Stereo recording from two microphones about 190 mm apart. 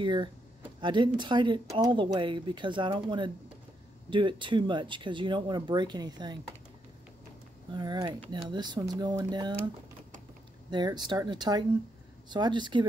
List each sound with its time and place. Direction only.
0.0 s speech: 25° right (ahead or behind)
7.7 s speech: 20° right (ahead or behind)
10.7 s speech: 25° right (ahead or behind)